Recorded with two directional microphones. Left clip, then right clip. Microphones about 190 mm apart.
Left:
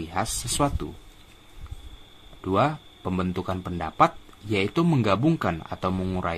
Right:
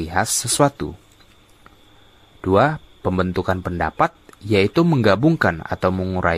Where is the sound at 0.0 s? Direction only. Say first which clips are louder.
Right 8 dB; 35° right (ahead or behind).